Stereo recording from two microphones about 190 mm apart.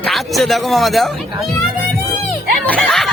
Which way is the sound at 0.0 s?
Centre (ahead or behind).